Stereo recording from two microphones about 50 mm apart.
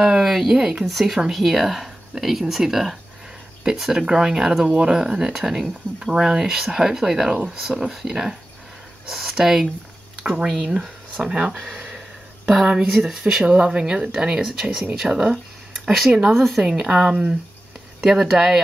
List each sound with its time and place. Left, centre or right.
0.0 s speech: centre
12.9 s speech: centre
15.3 s a sound: centre
16.1 s speech: centre
16.3 s speech: centre
16.6 s speech: centre